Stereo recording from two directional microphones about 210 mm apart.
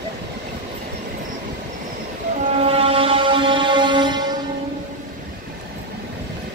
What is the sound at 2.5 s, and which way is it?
Music, 25° right (ahead or behind).